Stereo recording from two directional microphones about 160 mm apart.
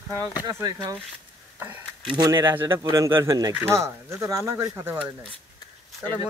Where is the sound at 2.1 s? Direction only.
25° right (ahead or behind).